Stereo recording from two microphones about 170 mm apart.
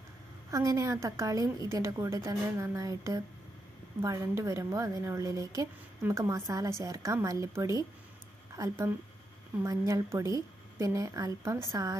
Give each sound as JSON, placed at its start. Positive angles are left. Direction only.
{"t": 0.5, "sound": "a woman's voice", "side_deg": -20}